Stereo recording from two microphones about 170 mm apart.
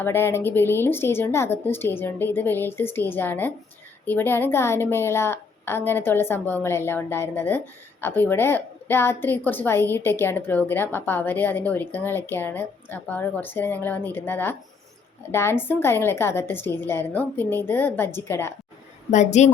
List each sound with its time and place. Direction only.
0.0 s a woman's voice: 15° left (ahead or behind)
19.1 s a woman's voice: 45° left (ahead or behind)